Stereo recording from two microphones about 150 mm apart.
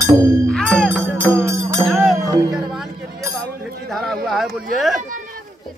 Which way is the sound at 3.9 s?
Centre (ahead or behind).